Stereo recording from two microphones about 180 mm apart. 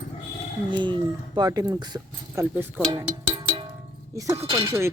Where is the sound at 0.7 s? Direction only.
25° right (ahead or behind).